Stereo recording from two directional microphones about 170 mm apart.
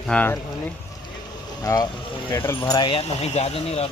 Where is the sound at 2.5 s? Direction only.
25° left (ahead or behind).